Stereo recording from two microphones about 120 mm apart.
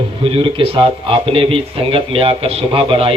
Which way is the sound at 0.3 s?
50° right (ahead or behind).